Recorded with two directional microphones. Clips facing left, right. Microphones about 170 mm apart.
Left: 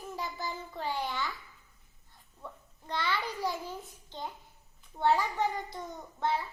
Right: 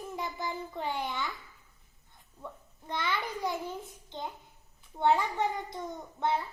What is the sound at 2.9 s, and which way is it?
Child singing, 20° right (ahead or behind).